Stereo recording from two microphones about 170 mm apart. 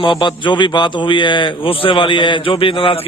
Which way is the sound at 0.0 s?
30° left (ahead or behind).